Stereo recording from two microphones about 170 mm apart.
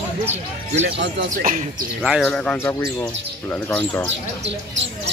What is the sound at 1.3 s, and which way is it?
Speech, 50° right (ahead or behind).